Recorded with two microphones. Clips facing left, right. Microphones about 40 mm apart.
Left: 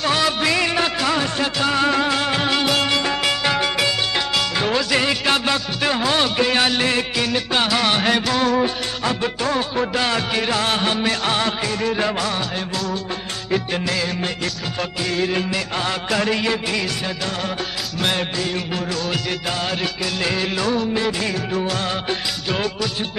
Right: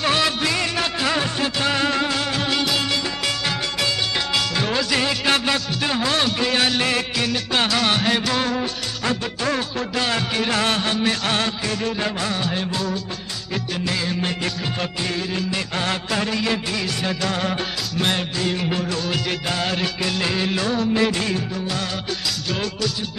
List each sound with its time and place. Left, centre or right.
0.0 s music: centre
0.4 s music: centre
1.0 s music: centre
2.0 s music: centre
4.6 s music: centre
9.9 s music: centre
13.8 s music: centre
15.5 s music: centre
22.5 s music: centre